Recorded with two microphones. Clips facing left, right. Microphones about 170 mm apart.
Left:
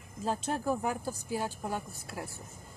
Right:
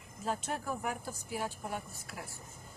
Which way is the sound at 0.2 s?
30° left (ahead or behind).